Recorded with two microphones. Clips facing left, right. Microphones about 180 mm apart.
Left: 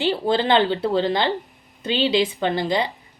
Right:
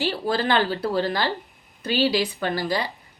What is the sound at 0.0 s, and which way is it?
A woman's voice, 25° left (ahead or behind).